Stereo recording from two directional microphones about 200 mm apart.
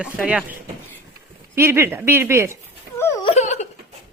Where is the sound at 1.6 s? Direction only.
10° right (ahead or behind).